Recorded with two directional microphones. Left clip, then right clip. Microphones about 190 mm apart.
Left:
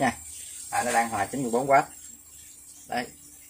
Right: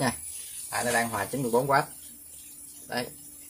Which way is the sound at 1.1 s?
Centre (ahead or behind).